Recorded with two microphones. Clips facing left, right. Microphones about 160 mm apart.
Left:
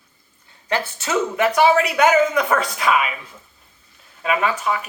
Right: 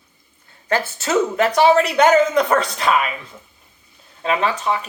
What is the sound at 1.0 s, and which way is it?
Speech, 10° left (ahead or behind).